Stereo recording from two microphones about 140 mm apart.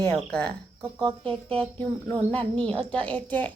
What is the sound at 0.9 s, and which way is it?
Speech, 40° right (ahead or behind).